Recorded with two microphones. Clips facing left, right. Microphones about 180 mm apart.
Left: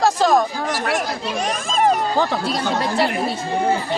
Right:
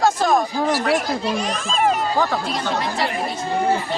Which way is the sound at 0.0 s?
35° left (ahead or behind).